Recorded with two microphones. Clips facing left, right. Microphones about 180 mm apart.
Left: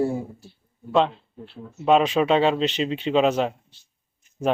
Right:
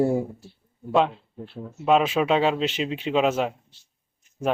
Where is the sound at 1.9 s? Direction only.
5° right (ahead or behind).